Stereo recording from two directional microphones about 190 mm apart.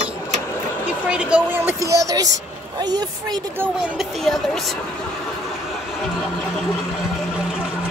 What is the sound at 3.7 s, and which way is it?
Speech, 5° right (ahead or behind).